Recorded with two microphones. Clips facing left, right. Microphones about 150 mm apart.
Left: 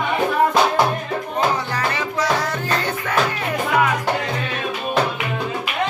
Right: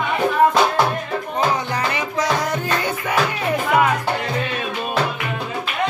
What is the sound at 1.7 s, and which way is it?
Music, 15° right (ahead or behind).